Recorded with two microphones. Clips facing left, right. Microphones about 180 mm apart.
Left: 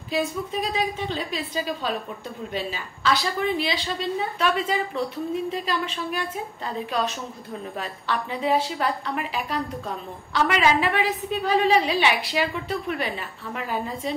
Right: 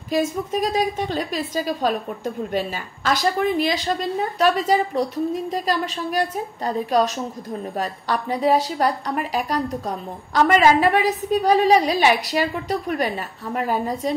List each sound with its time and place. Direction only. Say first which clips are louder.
0.1 s a woman's voice: right 4 dB; 45° right (ahead or behind)